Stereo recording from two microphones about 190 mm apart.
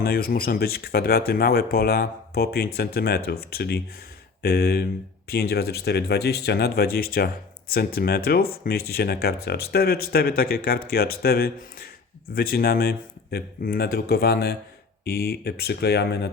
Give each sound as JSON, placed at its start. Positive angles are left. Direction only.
{"t": 0.0, "sound": "speech", "side_deg": 55}